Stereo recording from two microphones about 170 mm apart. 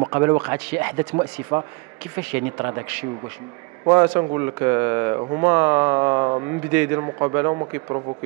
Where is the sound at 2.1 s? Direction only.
10° right (ahead or behind).